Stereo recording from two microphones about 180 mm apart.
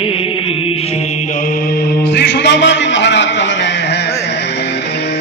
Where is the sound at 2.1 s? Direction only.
70° left (ahead or behind).